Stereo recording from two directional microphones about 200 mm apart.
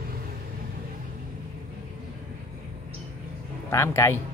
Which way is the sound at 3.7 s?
15° left (ahead or behind).